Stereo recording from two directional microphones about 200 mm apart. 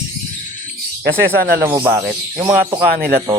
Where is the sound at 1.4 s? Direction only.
50° right (ahead or behind).